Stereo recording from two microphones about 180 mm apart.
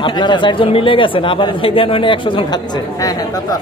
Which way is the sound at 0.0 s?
25° left (ahead or behind).